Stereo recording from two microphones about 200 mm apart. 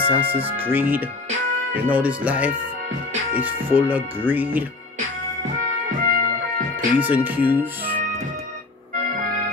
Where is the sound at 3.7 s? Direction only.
10° right (ahead or behind).